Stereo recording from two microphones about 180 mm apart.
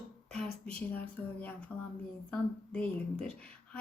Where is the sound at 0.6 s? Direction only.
5° left (ahead or behind).